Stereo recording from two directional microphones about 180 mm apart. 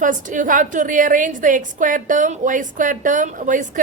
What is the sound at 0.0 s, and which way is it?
A woman's voice, 45° right (ahead or behind).